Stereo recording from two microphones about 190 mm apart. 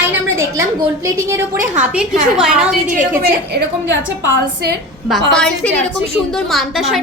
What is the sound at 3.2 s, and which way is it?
Speech, 55° right (ahead or behind).